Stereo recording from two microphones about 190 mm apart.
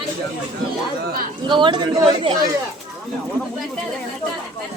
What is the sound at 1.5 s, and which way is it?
Speech, 25° right (ahead or behind).